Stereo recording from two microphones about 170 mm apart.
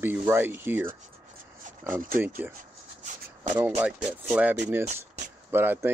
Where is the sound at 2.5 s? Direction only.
45° right (ahead or behind).